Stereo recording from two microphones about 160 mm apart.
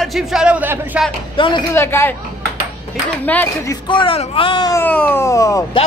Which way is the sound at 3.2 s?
10° left (ahead or behind).